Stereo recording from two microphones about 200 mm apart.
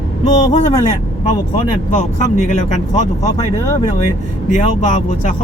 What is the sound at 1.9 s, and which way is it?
Speech, 40° left (ahead or behind).